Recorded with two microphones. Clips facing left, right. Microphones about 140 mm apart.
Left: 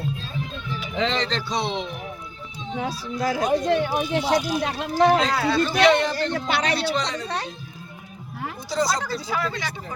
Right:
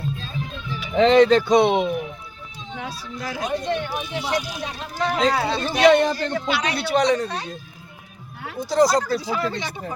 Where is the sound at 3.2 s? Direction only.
35° left (ahead or behind).